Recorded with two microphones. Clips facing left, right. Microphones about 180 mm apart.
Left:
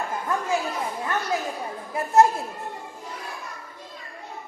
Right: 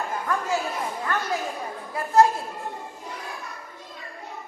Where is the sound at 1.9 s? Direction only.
25° left (ahead or behind).